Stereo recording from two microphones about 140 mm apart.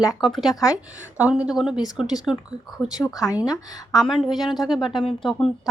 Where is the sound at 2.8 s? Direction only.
25° left (ahead or behind).